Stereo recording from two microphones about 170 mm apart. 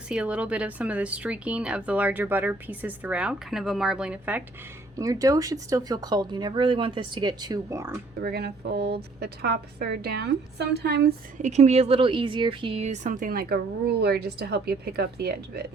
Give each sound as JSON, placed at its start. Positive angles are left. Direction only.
{"t": 0.1, "sound": "a woman's voice", "side_deg": -5}
{"t": 4.9, "sound": "speech", "side_deg": -20}
{"t": 8.2, "sound": "a woman's voice", "side_deg": -70}
{"t": 11.3, "sound": "speech", "side_deg": -45}